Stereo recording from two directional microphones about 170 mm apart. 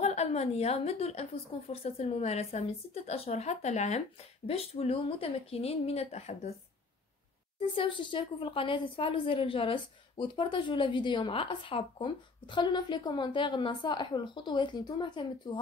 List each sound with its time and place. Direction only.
0.0 s a woman's voice: 40° left (ahead or behind)
7.5 s a woman's voice: 30° left (ahead or behind)